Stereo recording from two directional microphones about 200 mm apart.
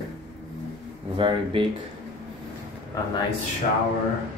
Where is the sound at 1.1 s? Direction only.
25° right (ahead or behind).